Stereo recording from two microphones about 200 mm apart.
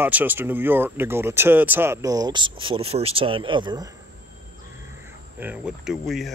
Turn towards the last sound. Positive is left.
turn(degrees=0)  # may be behind; listen again after turning